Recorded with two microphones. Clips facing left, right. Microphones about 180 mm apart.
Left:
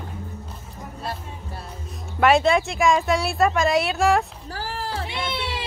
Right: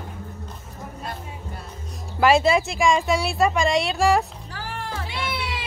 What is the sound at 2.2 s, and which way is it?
Speech, centre (ahead or behind).